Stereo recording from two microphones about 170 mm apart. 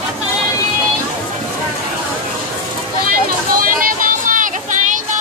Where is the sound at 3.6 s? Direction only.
55° right (ahead or behind).